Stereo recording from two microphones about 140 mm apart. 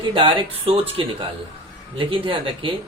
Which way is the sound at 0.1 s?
35° right (ahead or behind).